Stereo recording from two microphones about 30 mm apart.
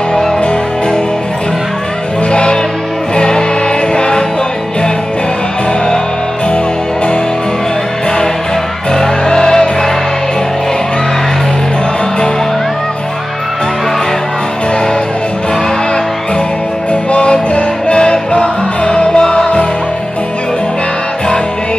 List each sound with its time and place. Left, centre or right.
3.2 s music: left
8.9 s music: centre
16.9 s music: left